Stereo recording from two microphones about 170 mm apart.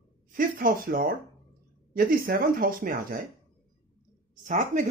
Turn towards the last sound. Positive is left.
turn(degrees=-45)  # may be behind; listen again after turning